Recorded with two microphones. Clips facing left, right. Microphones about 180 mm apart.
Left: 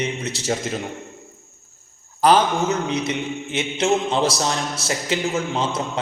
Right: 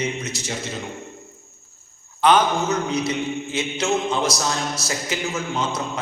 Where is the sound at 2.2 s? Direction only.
30° left (ahead or behind).